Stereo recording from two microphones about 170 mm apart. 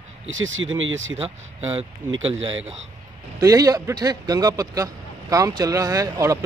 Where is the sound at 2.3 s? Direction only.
40° right (ahead or behind).